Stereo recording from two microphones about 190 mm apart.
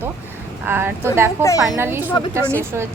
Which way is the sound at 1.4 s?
15° left (ahead or behind).